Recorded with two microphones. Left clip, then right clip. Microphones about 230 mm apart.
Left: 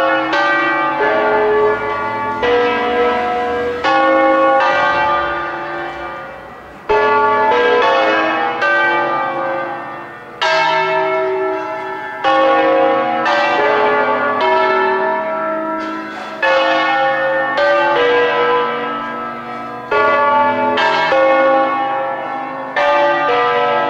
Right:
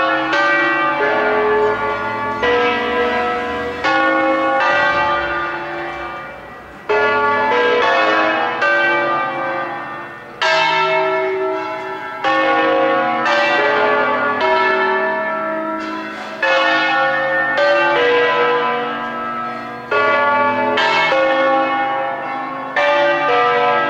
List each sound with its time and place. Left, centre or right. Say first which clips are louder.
0.0 s church bell: left 1 dB; centre
6.9 s change ringing: left 2 dB; centre
10.4 s church bell: left 1 dB; centre
16.3 s church bell: left 1 dB; centre
19.9 s church bell: left 2 dB; centre